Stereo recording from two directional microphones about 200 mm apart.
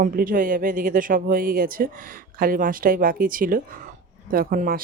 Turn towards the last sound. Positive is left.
turn(degrees=-45)  # may be behind; listen again after turning